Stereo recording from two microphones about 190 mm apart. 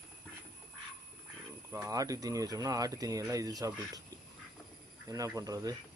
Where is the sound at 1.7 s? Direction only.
15° right (ahead or behind).